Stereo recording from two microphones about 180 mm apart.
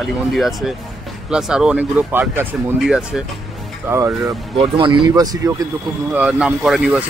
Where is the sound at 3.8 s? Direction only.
15° right (ahead or behind).